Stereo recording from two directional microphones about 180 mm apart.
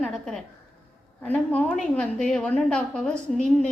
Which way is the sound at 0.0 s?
Centre (ahead or behind).